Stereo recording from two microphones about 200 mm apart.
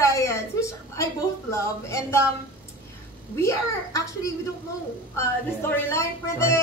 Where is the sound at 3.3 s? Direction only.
15° left (ahead or behind).